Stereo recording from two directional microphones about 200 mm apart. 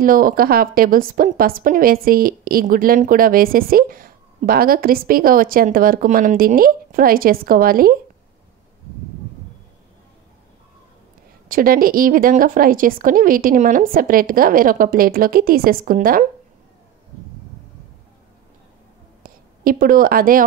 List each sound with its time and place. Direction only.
0.0 s a woman's voice: 45° right (ahead or behind)
11.4 s a woman's voice: 45° right (ahead or behind)
19.2 s a woman's voice: 45° right (ahead or behind)